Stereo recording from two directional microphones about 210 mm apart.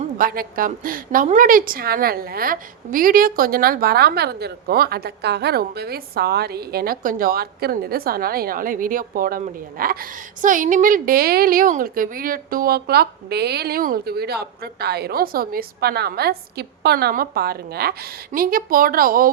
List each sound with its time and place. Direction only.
0.0 s a woman's voice: 45° right (ahead or behind)